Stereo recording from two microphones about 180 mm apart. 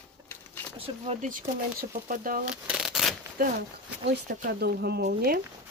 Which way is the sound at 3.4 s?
55° right (ahead or behind).